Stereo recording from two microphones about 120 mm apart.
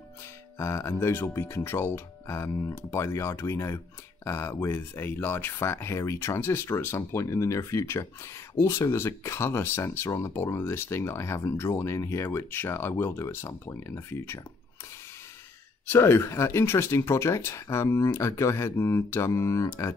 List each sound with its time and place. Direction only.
0.6 s speech: 25° left (ahead or behind)
15.9 s speech: 20° left (ahead or behind)